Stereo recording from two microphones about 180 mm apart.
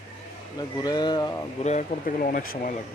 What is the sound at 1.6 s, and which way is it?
Speech, 40° left (ahead or behind).